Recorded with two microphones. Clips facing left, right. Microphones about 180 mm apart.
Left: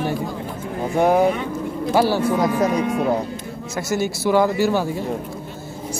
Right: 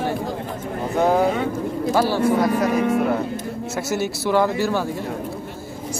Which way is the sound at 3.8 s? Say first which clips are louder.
Left 2 dB; 5° right (ahead or behind).